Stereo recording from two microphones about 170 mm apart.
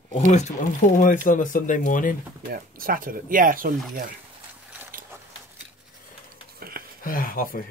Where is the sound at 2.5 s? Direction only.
55° right (ahead or behind).